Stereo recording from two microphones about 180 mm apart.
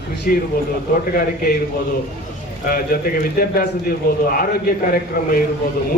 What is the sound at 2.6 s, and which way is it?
A man's voice, 50° left (ahead or behind).